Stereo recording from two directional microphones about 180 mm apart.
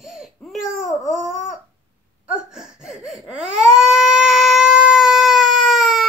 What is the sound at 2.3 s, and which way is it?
Baby cry, 5° right (ahead or behind).